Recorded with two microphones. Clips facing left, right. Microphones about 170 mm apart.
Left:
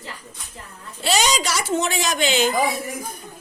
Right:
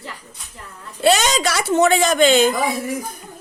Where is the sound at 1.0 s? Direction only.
60° right (ahead or behind).